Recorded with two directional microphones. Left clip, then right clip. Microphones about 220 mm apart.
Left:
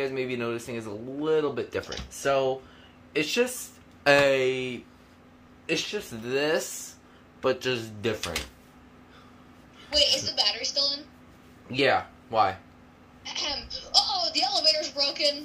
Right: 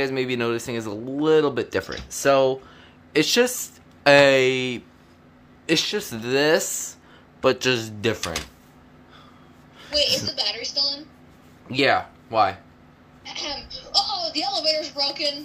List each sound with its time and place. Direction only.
0.0 s a woman's voice: 40° right (ahead or behind)
4.0 s speech: 35° right (ahead or behind)
8.2 s speech: 25° right (ahead or behind)
9.9 s a child's voice: 20° left (ahead or behind)
11.7 s speech: 35° right (ahead or behind)
13.2 s a child's voice: 20° left (ahead or behind)